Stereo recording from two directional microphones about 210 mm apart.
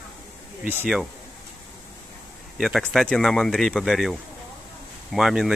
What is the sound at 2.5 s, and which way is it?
Speech, centre (ahead or behind).